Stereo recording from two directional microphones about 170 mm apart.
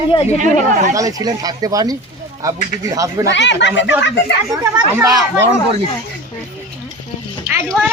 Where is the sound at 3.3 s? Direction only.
90° left.